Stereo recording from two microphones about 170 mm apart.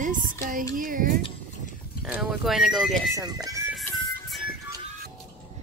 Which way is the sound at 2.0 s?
Centre (ahead or behind).